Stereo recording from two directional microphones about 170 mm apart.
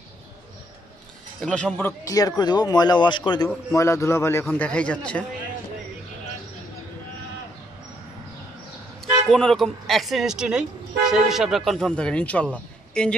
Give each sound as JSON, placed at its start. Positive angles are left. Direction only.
{"t": 1.4, "sound": "a man's voice", "side_deg": 5}
{"t": 9.3, "sound": "speech", "side_deg": 5}